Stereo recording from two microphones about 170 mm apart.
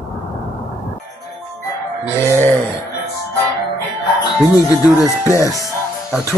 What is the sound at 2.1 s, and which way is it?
Speech, 15° right (ahead or behind).